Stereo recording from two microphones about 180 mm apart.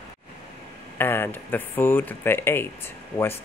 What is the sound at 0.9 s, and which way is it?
Speech, 10° left (ahead or behind).